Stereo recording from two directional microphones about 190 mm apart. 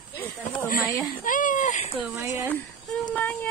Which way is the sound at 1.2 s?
45° left (ahead or behind).